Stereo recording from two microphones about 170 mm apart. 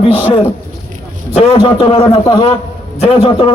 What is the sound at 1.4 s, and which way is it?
A man's voice, 25° left (ahead or behind).